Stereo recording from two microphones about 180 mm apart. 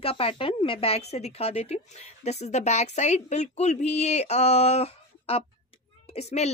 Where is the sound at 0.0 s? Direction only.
30° left (ahead or behind).